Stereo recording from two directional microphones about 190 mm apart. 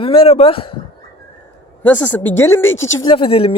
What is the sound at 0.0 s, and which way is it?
Speech, 30° left (ahead or behind).